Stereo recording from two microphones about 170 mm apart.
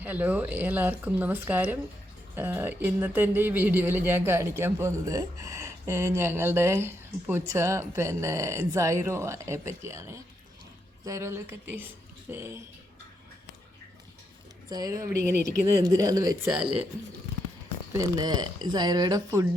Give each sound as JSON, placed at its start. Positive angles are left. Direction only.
{"t": 0.0, "sound": "speech", "side_deg": -10}
{"t": 14.7, "sound": "speech", "side_deg": -20}
{"t": 17.9, "sound": "speech", "side_deg": -20}